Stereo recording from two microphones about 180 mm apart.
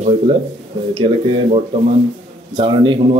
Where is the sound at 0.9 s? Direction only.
30° right (ahead or behind).